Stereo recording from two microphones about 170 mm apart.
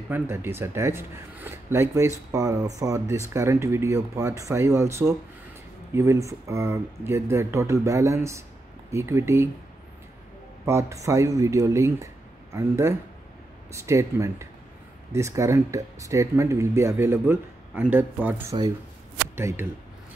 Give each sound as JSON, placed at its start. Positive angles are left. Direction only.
{"t": 0.1, "sound": "speech", "side_deg": -15}
{"t": 10.6, "sound": "speech", "side_deg": -15}